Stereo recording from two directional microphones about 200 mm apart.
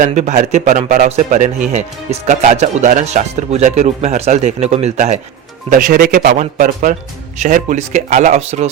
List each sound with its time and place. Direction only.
0.0 s speech: 35° right (ahead or behind)